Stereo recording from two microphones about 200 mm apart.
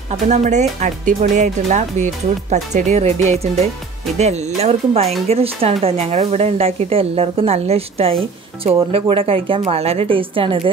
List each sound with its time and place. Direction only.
0.1 s a woman's voice: 35° right (ahead or behind)